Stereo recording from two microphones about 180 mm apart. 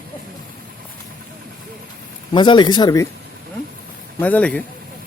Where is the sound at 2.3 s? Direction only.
25° left (ahead or behind).